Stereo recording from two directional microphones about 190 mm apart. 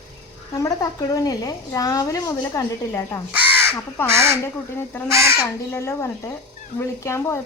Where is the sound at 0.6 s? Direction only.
15° left (ahead or behind).